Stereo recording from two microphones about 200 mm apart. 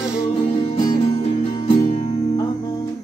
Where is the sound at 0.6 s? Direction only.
30° left (ahead or behind).